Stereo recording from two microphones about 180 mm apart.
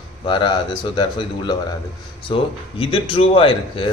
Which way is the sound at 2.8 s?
30° left (ahead or behind).